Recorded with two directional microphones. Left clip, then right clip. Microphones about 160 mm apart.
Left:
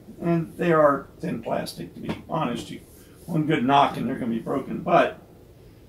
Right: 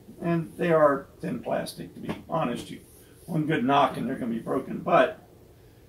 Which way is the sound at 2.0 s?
10° left (ahead or behind).